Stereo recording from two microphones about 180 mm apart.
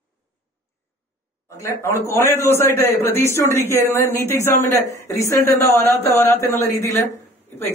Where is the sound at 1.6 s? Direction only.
15° left (ahead or behind).